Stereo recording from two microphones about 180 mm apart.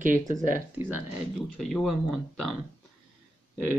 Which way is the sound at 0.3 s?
45° right (ahead or behind).